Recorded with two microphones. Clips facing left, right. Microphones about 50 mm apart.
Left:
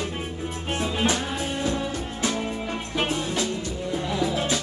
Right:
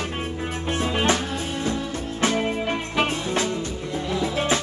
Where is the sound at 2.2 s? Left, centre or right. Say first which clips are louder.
Right 6 dB; right.